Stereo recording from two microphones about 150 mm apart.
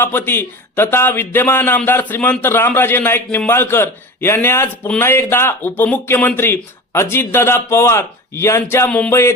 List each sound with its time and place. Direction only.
0.0 s a man's voice: 15° left (ahead or behind)